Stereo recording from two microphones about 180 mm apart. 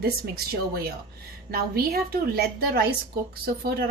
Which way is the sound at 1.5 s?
55° right (ahead or behind).